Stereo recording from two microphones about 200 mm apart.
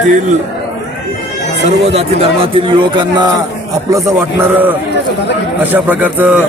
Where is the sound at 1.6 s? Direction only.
30° right (ahead or behind); by 6.4 s 10° right (ahead or behind).